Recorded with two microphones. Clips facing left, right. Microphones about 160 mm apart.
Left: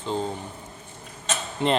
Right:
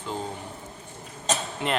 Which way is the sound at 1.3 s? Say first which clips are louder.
Right 3 dB; 40° right (ahead or behind).